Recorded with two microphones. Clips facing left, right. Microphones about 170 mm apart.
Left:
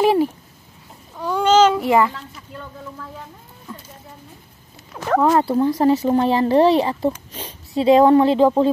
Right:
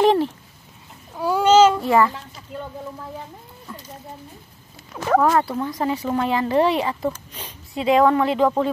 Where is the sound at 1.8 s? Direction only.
15° left (ahead or behind).